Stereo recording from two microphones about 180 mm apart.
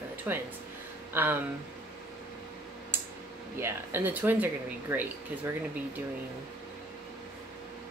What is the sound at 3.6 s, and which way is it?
Speech, 15° right (ahead or behind).